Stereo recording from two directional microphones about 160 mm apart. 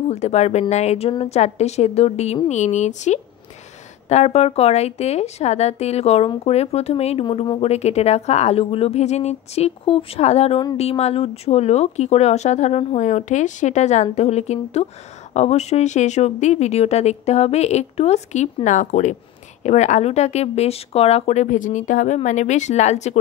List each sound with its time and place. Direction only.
0.1 s a woman's voice: 45° left (ahead or behind)